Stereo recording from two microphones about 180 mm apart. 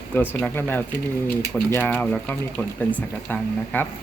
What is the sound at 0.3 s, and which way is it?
Speech, 10° left (ahead or behind).